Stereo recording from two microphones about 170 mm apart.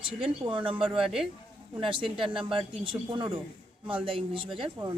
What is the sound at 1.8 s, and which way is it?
Speech, 30° right (ahead or behind).